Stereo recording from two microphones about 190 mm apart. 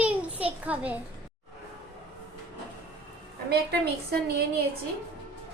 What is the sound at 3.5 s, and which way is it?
Speech, 55° right (ahead or behind).